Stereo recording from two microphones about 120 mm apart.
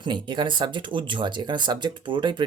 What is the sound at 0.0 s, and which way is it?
Speech, 40° right (ahead or behind).